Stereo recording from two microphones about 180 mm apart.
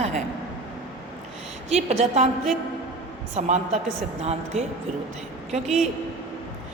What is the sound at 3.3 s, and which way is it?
A woman's voice, 40° right (ahead or behind).